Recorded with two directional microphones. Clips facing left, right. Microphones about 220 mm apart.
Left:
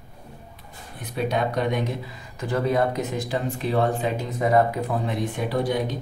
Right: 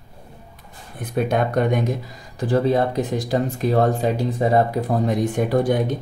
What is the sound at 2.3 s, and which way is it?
Speech, 30° right (ahead or behind).